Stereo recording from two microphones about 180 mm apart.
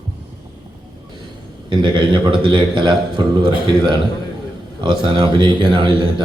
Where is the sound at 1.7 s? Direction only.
25° right (ahead or behind).